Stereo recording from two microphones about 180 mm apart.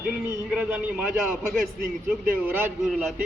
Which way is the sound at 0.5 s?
10° right (ahead or behind).